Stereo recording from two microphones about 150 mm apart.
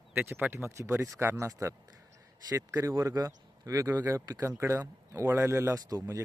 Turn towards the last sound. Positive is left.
turn(degrees=-25)  # may be behind; listen again after turning